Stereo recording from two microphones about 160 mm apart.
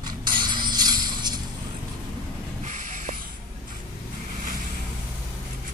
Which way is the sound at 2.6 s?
50° right (ahead or behind).